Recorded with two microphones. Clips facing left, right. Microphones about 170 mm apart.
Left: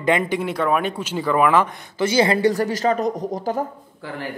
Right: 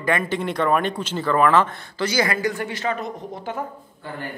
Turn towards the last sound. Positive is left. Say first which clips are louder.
# left 6 dB
turn(degrees=40)  # may be behind; listen again after turning